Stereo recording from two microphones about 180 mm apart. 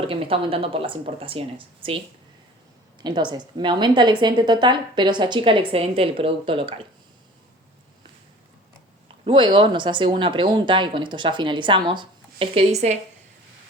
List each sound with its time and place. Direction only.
0.1 s speech: 30° right (ahead or behind)
3.0 s a woman's voice: 25° right (ahead or behind)
9.2 s a woman's voice: 25° right (ahead or behind)